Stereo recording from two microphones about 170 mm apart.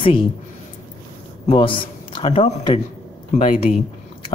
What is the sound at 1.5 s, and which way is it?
Speech, 30° left (ahead or behind).